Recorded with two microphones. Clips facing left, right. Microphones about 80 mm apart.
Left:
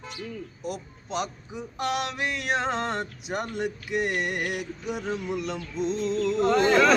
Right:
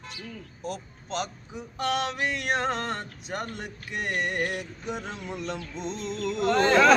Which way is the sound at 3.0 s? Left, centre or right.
Centre.